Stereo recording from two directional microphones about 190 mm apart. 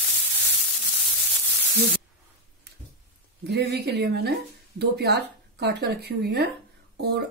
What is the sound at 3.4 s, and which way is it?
Speech, 60° right (ahead or behind).